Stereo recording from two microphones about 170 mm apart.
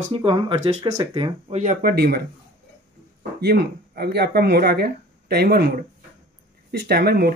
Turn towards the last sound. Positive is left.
turn(degrees=-70)  # may be behind; listen again after turning